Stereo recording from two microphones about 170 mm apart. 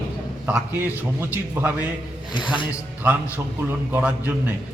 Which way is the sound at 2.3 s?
30° left (ahead or behind).